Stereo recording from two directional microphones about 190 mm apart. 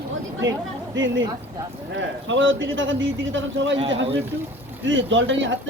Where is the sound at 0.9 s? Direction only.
80° right.